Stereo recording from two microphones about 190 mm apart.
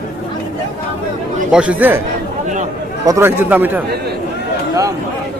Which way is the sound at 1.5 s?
5° right (ahead or behind).